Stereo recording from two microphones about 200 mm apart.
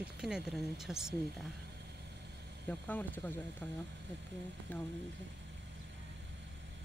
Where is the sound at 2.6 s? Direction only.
10° left (ahead or behind).